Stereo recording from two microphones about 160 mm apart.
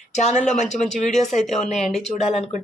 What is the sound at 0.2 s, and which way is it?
Speech, 45° left (ahead or behind).